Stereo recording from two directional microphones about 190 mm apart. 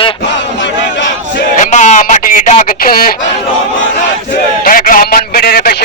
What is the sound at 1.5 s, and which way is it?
Speech, 40° left (ahead or behind).